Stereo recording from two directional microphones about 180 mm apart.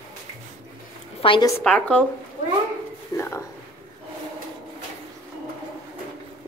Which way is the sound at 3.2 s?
15° left (ahead or behind).